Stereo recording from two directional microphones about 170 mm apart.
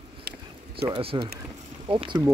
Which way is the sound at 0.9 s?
30° right (ahead or behind).